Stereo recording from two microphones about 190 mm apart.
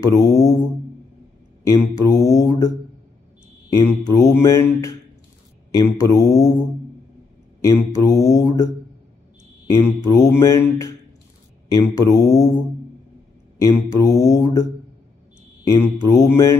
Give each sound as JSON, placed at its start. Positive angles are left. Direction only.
{"t": 0.0, "sound": "mantra", "side_deg": 15}
{"t": 1.7, "sound": "mantra", "side_deg": 15}
{"t": 3.7, "sound": "mantra", "side_deg": 15}
{"t": 7.6, "sound": "mantra", "side_deg": 15}
{"t": 9.8, "sound": "mantra", "side_deg": 15}
{"t": 13.6, "sound": "mantra", "side_deg": 15}
{"t": 15.7, "sound": "mantra", "side_deg": 15}